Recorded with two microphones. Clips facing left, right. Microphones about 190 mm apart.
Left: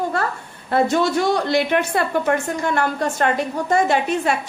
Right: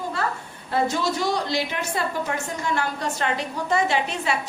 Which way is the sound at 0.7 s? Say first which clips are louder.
Left 6 dB; 60° left (ahead or behind).